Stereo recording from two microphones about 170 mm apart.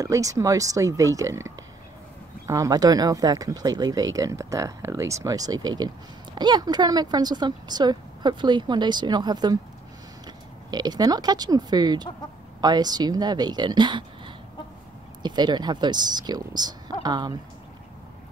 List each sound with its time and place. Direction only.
0.0 s speech: 20° right (ahead or behind)